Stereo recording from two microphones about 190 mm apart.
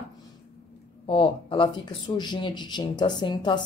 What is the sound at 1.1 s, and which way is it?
A woman's voice, 30° left (ahead or behind).